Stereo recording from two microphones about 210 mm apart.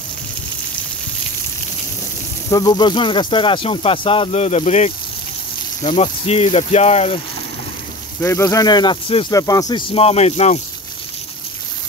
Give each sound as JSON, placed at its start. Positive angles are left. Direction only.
{"t": 2.5, "sound": "speech", "side_deg": 20}
{"t": 8.2, "sound": "speech", "side_deg": 15}